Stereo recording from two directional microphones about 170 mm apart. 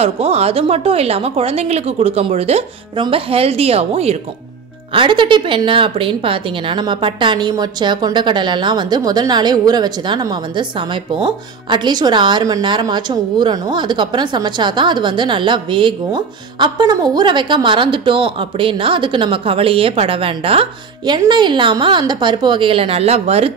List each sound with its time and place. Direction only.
0.0 s a woman's voice: 35° right (ahead or behind)